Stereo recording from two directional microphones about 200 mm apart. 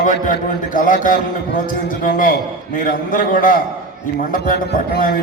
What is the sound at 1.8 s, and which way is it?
A man's voice, 40° left (ahead or behind).